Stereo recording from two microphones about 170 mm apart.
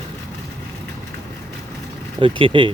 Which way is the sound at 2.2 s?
30° right (ahead or behind).